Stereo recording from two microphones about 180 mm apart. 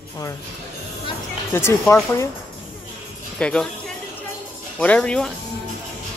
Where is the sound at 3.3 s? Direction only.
5° left (ahead or behind).